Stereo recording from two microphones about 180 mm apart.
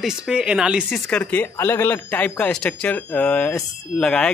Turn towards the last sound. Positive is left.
turn(degrees=5)  # may be behind; listen again after turning